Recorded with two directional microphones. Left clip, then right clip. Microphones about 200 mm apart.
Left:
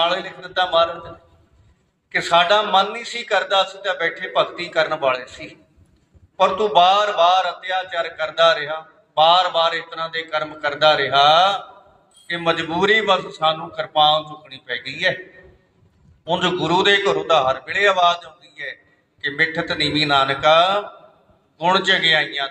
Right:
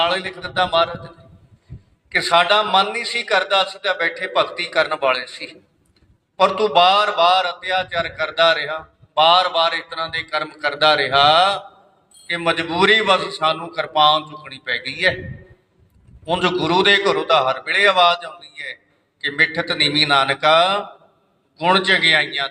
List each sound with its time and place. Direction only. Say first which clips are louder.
0.0 s a man's voice: right 1 dB; 25° right (ahead or behind)
2.1 s a man's voice: right 1 dB; 20° right (ahead or behind)
6.3 s a man's voice: even; 25° right (ahead or behind)
16.2 s a man's voice: right 1 dB; 25° right (ahead or behind)